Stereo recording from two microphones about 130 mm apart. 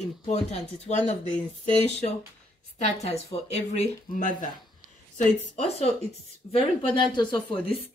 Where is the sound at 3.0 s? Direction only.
55° left (ahead or behind).